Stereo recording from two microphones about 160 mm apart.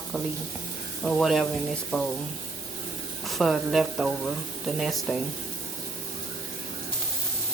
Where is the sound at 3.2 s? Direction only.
Centre (ahead or behind).